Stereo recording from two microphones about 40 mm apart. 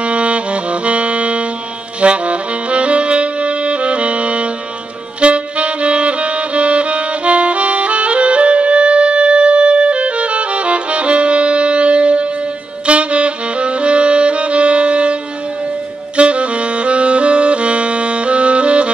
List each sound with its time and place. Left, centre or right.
0.0 s saxophone: right
5.2 s music: right
12.8 s saxophone: right
16.2 s saxophone: right